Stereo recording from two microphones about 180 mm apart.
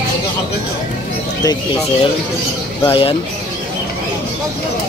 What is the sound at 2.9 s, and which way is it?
Speech, 30° left (ahead or behind).